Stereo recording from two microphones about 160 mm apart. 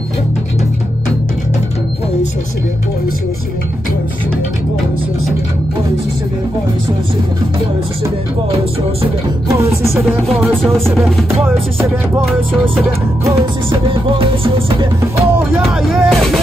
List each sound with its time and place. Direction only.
10.5 s music: 5° left (ahead or behind)
13.7 s music: 35° right (ahead or behind)
15.0 s speech: 15° right (ahead or behind)
15.7 s music: centre (ahead or behind)